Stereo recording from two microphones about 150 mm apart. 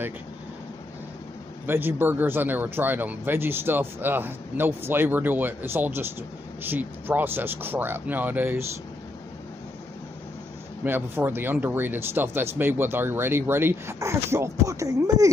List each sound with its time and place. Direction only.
1.7 s speech: 15° right (ahead or behind)
10.8 s speech: 15° right (ahead or behind)